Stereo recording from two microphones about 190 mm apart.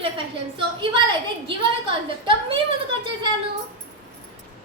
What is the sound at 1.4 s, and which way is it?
A woman's voice, 25° right (ahead or behind).